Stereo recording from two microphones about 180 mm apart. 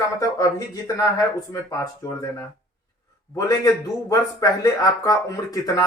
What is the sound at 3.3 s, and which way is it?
Speech, 20° left (ahead or behind).